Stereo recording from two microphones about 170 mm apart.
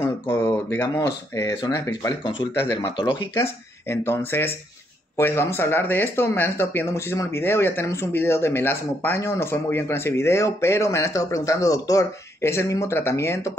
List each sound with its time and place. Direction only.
0.0 s speech: 15° left (ahead or behind)
2.7 s speech: 30° left (ahead or behind)
3.9 s speech: 15° left (ahead or behind)